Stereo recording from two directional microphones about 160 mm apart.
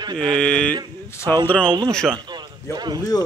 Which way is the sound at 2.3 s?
25° right (ahead or behind).